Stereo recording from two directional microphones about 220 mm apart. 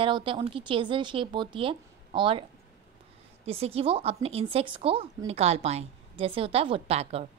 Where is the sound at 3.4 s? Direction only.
25° right (ahead or behind).